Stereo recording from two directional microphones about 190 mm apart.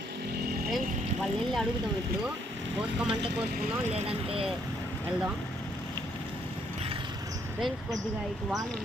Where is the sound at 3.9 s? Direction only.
30° right (ahead or behind).